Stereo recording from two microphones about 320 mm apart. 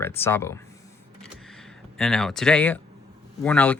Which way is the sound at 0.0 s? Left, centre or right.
Centre.